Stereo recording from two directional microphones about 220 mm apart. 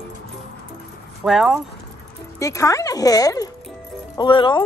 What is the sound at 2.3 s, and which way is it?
Speech, 15° left (ahead or behind).